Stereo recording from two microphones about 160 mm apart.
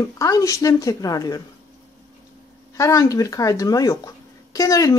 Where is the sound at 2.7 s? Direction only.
20° left (ahead or behind).